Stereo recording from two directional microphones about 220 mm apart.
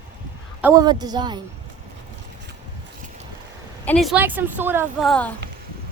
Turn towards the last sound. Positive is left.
turn(degrees=5)  # may be behind; listen again after turning